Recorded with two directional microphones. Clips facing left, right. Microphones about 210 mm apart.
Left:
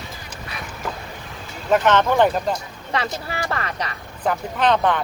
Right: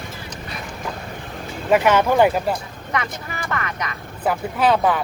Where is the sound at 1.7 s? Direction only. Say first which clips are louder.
Right 1 dB; 10° right (ahead or behind).